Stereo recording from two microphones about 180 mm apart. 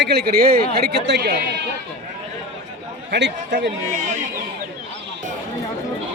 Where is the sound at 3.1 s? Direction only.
75° right (ahead or behind).